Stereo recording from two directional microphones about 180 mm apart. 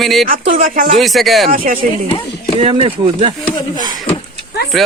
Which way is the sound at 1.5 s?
50° right (ahead or behind).